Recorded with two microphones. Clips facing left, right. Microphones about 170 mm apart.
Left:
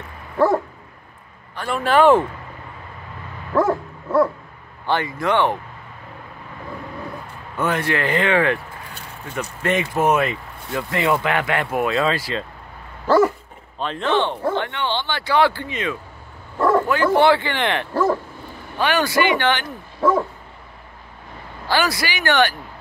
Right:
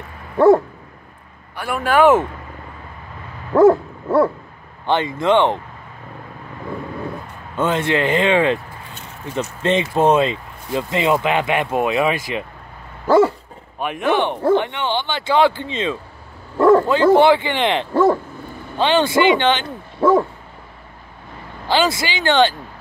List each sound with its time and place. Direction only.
1.6 s speech: 10° right (ahead or behind)
3.5 s dog: 30° right (ahead or behind)
4.8 s speech: 20° right (ahead or behind)
7.5 s speech: 25° right (ahead or behind)
21.6 s speech: 20° right (ahead or behind)